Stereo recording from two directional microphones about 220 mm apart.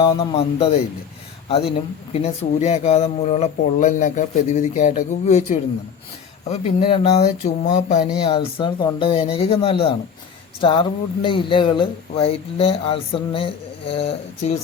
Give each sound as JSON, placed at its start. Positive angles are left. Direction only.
{"t": 0.0, "sound": "speech", "side_deg": 25}